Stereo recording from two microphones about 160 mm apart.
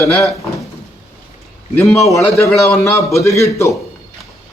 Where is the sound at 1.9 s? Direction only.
20° left (ahead or behind).